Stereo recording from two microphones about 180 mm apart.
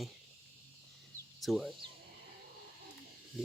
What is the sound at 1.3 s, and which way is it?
Speech, centre (ahead or behind).